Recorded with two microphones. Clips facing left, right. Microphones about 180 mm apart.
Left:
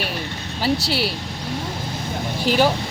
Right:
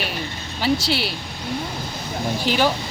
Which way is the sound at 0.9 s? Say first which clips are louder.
Left 1 dB; 40° left (ahead or behind).